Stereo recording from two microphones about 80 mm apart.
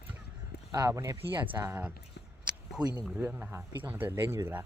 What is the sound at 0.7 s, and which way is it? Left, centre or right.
Speech, right.